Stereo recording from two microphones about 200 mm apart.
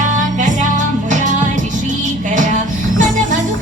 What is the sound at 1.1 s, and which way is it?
Music, 40° right (ahead or behind).